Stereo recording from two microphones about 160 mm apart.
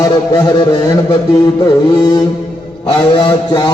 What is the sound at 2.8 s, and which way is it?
Speech, 30° left (ahead or behind).